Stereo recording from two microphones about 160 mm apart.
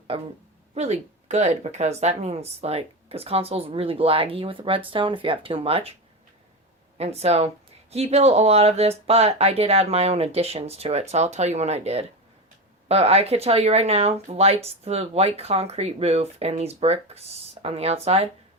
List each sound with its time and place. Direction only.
0.7 s speech: 45° right (ahead or behind)
6.9 s speech: 40° right (ahead or behind)